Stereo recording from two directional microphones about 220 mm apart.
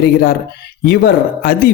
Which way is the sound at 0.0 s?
40° left (ahead or behind).